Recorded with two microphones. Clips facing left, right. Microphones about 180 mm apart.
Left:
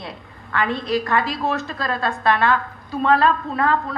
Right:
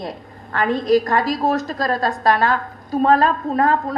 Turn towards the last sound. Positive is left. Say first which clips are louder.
# right 3 dB
turn(degrees=-40)  # may be behind; listen again after turning